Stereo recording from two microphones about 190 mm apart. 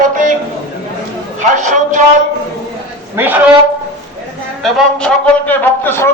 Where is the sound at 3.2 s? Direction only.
10° right (ahead or behind).